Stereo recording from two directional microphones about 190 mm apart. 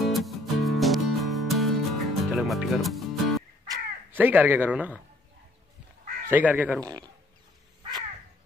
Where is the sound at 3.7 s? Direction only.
10° right (ahead or behind).